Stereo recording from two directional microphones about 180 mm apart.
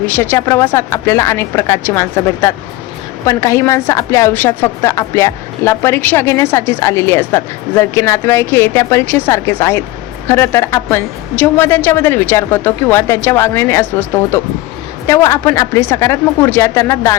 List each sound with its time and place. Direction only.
0.0 s a woman's voice: 10° left (ahead or behind)